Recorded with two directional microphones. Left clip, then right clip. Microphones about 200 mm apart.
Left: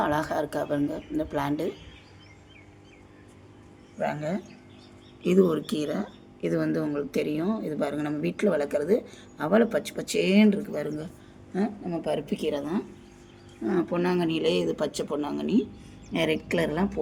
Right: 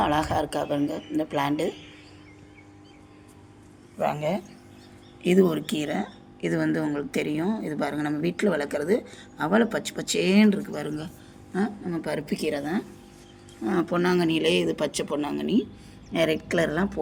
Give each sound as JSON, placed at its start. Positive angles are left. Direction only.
{"t": 0.0, "sound": "speech", "side_deg": -10}
{"t": 4.0, "sound": "speech", "side_deg": -15}